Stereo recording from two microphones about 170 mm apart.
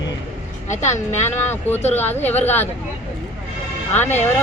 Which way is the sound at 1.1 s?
15° left (ahead or behind).